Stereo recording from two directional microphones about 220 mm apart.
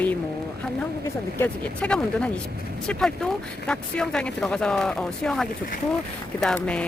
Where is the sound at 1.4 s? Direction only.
5° left (ahead or behind).